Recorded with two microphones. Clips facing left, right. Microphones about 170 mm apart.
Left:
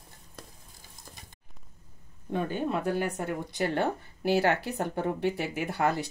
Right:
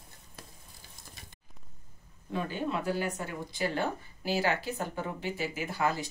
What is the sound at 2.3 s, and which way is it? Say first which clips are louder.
Speech: left 3 dB; 50° left (ahead or behind).